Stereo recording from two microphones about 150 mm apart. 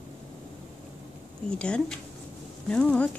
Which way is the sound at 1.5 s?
5° left (ahead or behind).